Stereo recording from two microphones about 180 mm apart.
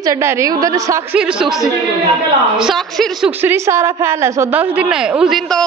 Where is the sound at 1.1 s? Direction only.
5° right (ahead or behind).